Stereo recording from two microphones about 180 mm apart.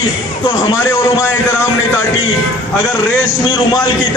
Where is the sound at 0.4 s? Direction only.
20° left (ahead or behind).